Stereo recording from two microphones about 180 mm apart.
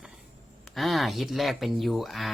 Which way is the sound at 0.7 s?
Centre (ahead or behind).